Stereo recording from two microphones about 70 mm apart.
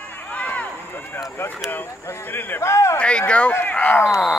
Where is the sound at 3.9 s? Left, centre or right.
Left.